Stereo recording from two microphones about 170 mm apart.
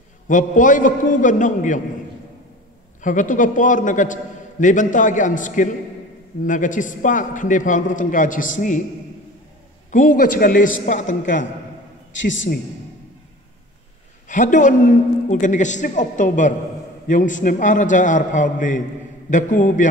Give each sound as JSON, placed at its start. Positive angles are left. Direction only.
{"t": 0.3, "sound": "a man's voice", "side_deg": 50}
{"t": 3.0, "sound": "a man's voice", "side_deg": 50}
{"t": 9.8, "sound": "a man's voice", "side_deg": 50}
{"t": 12.1, "sound": "a man's voice", "side_deg": 90}
{"t": 14.2, "sound": "a man's voice", "side_deg": 45}